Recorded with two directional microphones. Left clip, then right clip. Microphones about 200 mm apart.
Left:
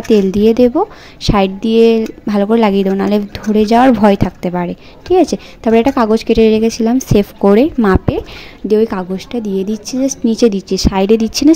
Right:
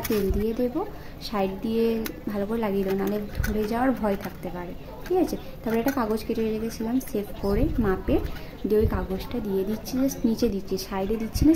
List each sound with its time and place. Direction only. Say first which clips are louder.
0.4 s speech: left 17 dB; 40° left (ahead or behind)